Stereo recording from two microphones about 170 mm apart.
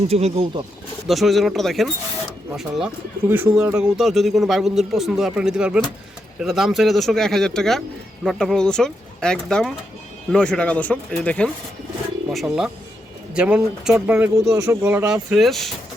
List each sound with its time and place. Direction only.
0.1 s speech: 40° right (ahead or behind)
1.0 s a man's voice: centre (ahead or behind)
3.9 s a man's voice: centre (ahead or behind)